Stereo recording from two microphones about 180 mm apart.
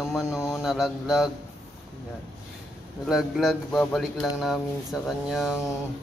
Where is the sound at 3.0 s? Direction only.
Centre (ahead or behind).